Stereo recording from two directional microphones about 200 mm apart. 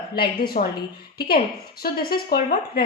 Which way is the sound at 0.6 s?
35° left (ahead or behind).